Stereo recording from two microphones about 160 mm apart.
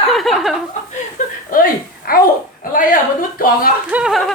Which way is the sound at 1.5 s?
65° left (ahead or behind).